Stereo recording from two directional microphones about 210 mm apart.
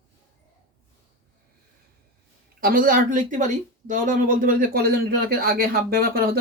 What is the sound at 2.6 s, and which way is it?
Speech, 40° right (ahead or behind).